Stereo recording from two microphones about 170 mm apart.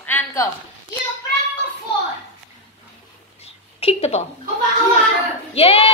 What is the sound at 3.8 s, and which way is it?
Speech, 35° left (ahead or behind).